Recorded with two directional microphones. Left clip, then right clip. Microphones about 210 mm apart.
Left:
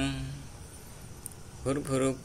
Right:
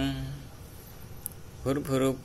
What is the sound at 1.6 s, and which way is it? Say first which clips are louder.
Speech: right 2 dB; 10° right (ahead or behind).